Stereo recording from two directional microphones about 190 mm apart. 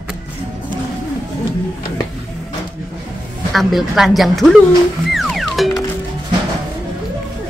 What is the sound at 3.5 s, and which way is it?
Speech, centre (ahead or behind).